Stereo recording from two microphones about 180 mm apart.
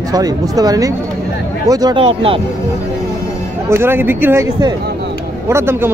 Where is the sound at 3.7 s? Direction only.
10° right (ahead or behind).